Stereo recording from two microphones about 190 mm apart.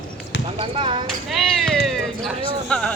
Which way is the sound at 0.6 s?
30° right (ahead or behind).